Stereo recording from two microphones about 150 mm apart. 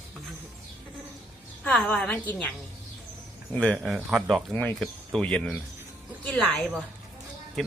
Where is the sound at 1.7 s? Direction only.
5° left (ahead or behind).